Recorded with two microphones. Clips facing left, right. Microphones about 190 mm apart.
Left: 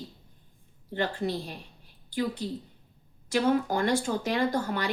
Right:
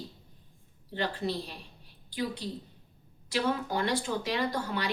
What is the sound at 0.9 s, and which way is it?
Speech, 50° left (ahead or behind).